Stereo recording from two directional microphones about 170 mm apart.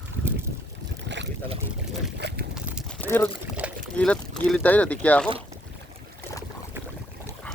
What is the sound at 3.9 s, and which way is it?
Speech, 5° left (ahead or behind).